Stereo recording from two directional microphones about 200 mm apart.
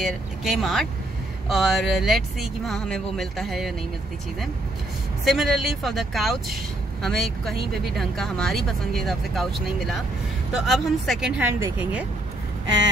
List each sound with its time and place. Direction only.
0.0 s speech: centre (ahead or behind)
5.2 s speech: centre (ahead or behind)